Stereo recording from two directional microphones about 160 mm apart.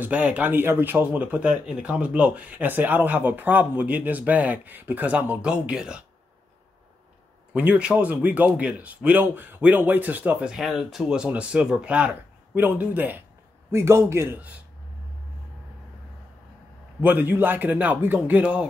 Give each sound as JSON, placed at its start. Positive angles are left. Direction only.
{"t": 0.0, "sound": "speech", "side_deg": -10}
{"t": 7.5, "sound": "speech", "side_deg": -10}
{"t": 17.0, "sound": "speech", "side_deg": -10}